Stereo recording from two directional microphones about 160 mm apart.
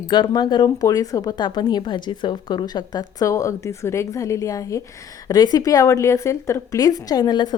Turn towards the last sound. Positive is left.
turn(degrees=25)  # may be behind; listen again after turning